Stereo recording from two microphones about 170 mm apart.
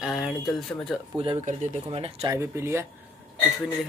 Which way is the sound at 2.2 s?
20° right (ahead or behind).